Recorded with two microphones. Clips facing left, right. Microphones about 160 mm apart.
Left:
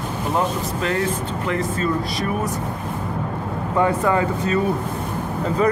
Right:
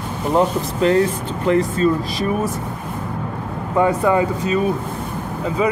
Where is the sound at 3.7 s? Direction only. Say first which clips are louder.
Right 3 dB; 15° right (ahead or behind).